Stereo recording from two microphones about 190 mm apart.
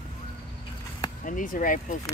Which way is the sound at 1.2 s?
45° left (ahead or behind).